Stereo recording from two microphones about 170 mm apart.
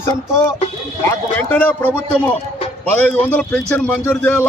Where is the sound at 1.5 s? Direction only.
10° left (ahead or behind).